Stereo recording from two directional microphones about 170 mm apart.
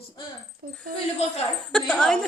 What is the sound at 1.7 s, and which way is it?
Speech, centre (ahead or behind).